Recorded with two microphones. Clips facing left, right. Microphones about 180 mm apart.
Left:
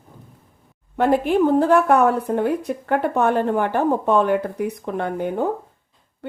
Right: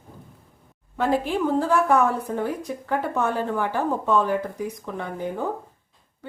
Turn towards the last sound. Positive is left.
turn(degrees=65)  # may be behind; listen again after turning